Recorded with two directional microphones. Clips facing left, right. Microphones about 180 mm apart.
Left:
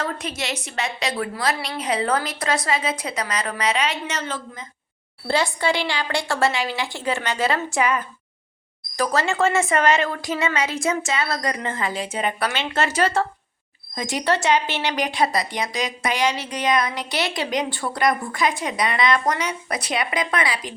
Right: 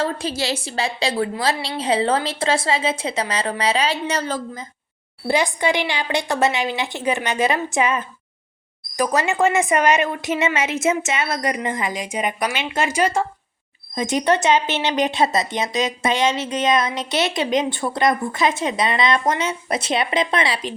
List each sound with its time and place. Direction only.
0.0 s speech: 30° right (ahead or behind)
5.3 s a woman's voice: 15° right (ahead or behind)